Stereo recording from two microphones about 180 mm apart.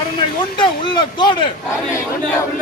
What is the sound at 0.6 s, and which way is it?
Speech, 25° left (ahead or behind).